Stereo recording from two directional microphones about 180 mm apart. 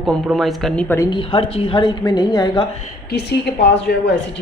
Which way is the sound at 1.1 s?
30° left (ahead or behind).